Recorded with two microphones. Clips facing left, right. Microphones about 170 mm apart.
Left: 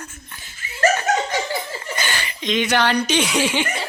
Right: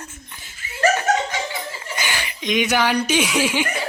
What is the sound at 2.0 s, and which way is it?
Speech, 10° right (ahead or behind).